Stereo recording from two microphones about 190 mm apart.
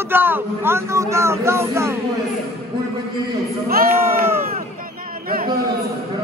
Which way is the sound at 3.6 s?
50° right (ahead or behind).